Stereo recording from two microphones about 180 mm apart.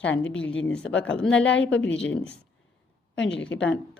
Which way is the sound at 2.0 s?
5° left (ahead or behind).